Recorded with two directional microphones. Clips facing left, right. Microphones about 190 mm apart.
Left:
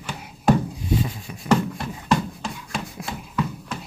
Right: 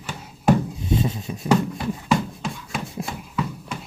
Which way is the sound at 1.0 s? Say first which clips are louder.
Right 4 dB; 25° right (ahead or behind).